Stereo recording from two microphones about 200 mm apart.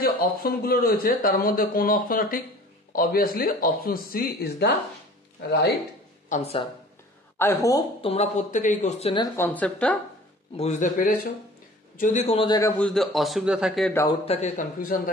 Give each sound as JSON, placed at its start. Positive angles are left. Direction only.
{"t": 0.0, "sound": "speech", "side_deg": 45}
{"t": 6.2, "sound": "speech", "side_deg": 35}
{"t": 7.3, "sound": "speech", "side_deg": 15}
{"t": 8.0, "sound": "speech", "side_deg": 30}
{"t": 9.2, "sound": "speech", "side_deg": 10}
{"t": 10.6, "sound": "speech", "side_deg": 40}
{"t": 12.4, "sound": "a man's voice", "side_deg": 15}
{"t": 14.2, "sound": "speech", "side_deg": 35}